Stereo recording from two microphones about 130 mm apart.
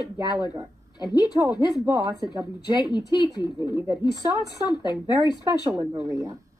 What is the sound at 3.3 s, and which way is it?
A woman's voice, 35° left (ahead or behind).